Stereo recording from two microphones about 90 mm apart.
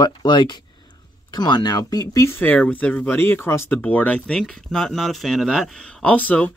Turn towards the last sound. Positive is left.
turn(degrees=15)  # may be behind; listen again after turning